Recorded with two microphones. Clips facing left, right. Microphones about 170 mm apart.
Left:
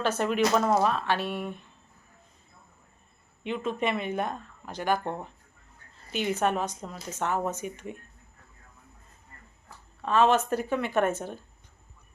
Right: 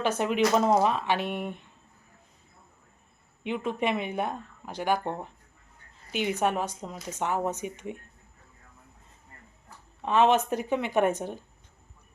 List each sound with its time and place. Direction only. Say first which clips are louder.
0.0 s speech: even; 15° right (ahead or behind)
3.4 s a woman's voice: even; 15° right (ahead or behind)
10.0 s speech: even; 20° right (ahead or behind)